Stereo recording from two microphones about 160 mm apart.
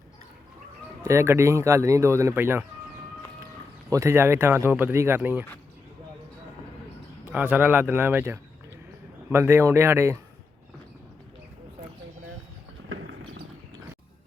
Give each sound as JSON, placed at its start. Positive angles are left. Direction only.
{"t": 1.0, "sound": "speech", "side_deg": -15}
{"t": 3.8, "sound": "speech", "side_deg": -20}
{"t": 7.3, "sound": "speech", "side_deg": -10}